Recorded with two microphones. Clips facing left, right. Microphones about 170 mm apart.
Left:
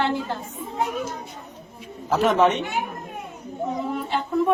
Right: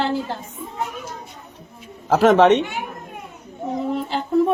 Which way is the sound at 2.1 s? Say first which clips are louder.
Right 6 dB; 80° right.